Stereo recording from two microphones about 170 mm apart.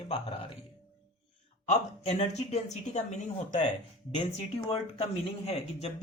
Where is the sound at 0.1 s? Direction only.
30° left (ahead or behind).